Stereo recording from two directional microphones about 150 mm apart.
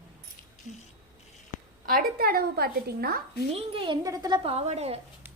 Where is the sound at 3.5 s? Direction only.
35° right (ahead or behind).